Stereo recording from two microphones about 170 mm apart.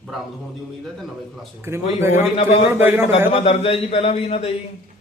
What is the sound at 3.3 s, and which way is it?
A man's voice, 40° left (ahead or behind).